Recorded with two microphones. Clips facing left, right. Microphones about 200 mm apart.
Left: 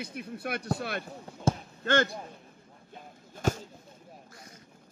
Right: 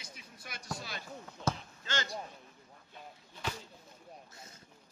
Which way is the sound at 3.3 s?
45° left (ahead or behind).